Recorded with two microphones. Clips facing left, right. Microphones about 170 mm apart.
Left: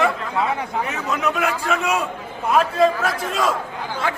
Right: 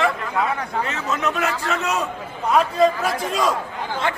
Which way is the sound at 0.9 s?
15° left (ahead or behind).